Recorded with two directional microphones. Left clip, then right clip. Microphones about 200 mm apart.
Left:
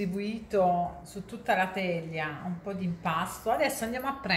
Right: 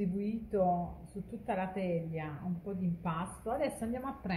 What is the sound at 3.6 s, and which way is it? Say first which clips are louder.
Speech: left 6 dB; centre (ahead or behind).